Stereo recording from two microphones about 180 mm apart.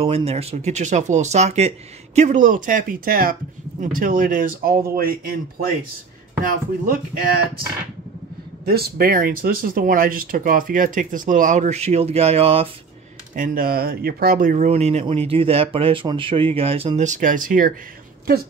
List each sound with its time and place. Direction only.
0.0 s speech: 35° right (ahead or behind); by 5.4 s 55° right (ahead or behind)
6.4 s speech: 50° right (ahead or behind)
8.6 s speech: 60° right (ahead or behind); by 12.6 s 35° right (ahead or behind)
13.3 s speech: 50° right (ahead or behind)